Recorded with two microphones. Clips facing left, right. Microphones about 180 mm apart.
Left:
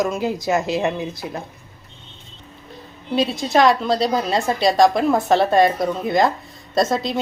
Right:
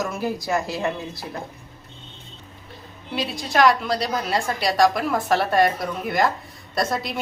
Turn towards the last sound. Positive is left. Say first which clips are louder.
# left 5 dB
turn(degrees=25)  # may be behind; listen again after turning